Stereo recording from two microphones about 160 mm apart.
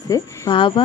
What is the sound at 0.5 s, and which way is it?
Speech, 30° left (ahead or behind).